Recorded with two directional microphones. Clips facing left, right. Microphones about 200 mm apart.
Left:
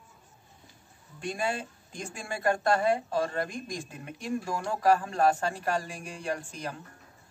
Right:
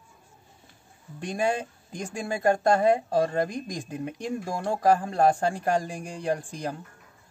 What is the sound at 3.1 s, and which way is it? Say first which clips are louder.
Speech: right 5 dB; 40° right (ahead or behind).